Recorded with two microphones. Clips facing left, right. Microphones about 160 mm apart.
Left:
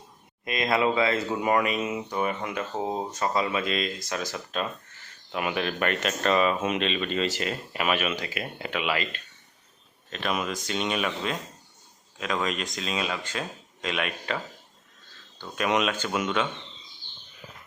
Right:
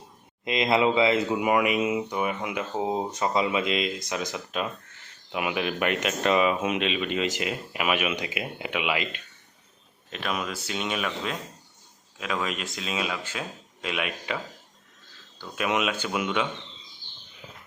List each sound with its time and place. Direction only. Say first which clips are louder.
0.4 s speech: right 2 dB; 20° right (ahead or behind)
15.5 s speech: left 1 dB; 5° right (ahead or behind)